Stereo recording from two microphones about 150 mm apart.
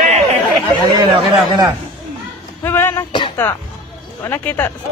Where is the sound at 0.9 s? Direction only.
30° right (ahead or behind).